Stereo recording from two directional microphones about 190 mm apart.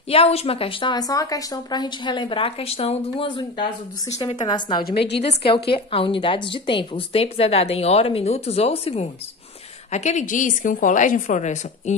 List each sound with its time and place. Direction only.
0.1 s a woman's voice: 30° left (ahead or behind)